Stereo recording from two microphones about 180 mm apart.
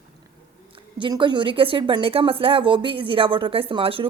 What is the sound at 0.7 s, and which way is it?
A woman's voice, 25° right (ahead or behind).